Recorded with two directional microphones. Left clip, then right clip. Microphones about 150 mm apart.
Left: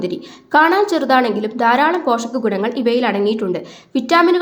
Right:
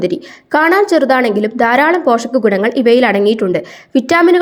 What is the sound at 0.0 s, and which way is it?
A woman's voice, 25° right (ahead or behind).